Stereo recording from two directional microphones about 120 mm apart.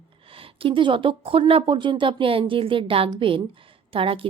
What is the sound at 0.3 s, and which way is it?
Speech, 50° right (ahead or behind).